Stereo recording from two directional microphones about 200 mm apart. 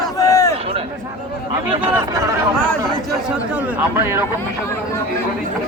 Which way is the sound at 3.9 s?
10° right (ahead or behind).